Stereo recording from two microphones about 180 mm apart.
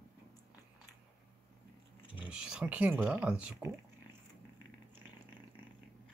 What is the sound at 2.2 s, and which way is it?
Speech, 5° right (ahead or behind).